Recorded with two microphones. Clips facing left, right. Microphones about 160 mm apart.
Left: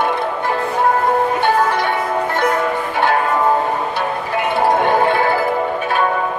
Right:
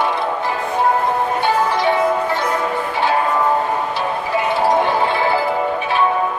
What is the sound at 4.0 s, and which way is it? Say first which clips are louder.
Music: even; 55° left (ahead or behind).